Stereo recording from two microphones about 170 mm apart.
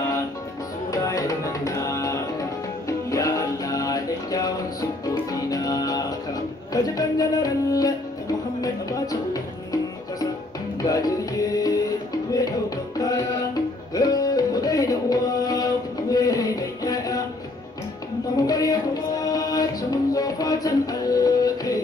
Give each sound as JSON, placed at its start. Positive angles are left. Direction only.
{"t": 0.9, "sound": "music", "side_deg": 20}
{"t": 10.8, "sound": "music", "side_deg": 20}
{"t": 18.3, "sound": "music", "side_deg": 20}